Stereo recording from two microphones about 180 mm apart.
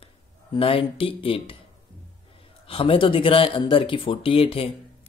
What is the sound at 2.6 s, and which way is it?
Speech, 30° left (ahead or behind).